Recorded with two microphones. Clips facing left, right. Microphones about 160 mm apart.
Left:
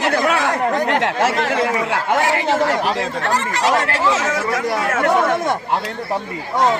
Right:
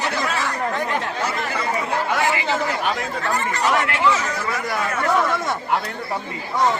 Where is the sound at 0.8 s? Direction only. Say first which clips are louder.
Left 7 dB; 80° left.